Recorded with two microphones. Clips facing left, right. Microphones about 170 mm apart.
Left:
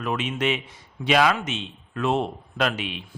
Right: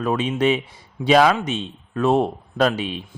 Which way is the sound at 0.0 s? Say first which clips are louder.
Right 6 dB; 35° right (ahead or behind).